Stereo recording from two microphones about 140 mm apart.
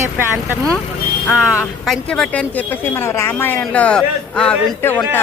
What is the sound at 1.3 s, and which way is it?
A woman's voice, 5° right (ahead or behind).